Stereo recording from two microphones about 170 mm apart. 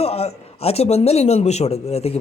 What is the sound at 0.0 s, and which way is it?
A man's voice, 35° left (ahead or behind).